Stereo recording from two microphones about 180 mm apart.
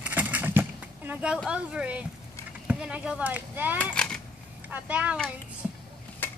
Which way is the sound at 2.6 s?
5° right (ahead or behind).